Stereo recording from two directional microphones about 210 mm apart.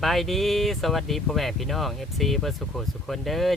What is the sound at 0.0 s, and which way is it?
Speech, centre (ahead or behind).